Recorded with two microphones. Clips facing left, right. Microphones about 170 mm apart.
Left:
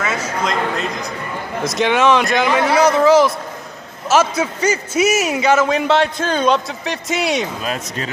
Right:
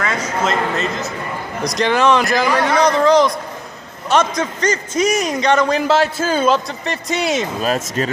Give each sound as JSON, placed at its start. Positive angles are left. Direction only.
{"t": 0.4, "sound": "a man's voice", "side_deg": -5}
{"t": 7.6, "sound": "speech", "side_deg": -45}